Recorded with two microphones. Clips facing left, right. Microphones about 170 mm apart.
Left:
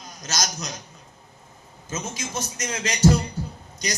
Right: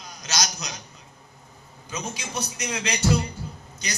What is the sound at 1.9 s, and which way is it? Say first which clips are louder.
Speech: left 1 dB; 45° left (ahead or behind).